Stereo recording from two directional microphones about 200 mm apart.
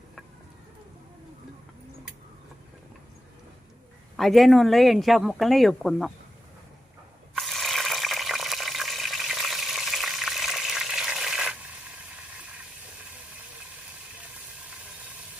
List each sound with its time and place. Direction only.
4.2 s speech: centre (ahead or behind)
7.3 s water: centre (ahead or behind)